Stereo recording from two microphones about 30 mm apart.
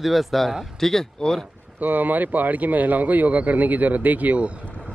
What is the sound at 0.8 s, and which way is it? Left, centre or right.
Speech, centre.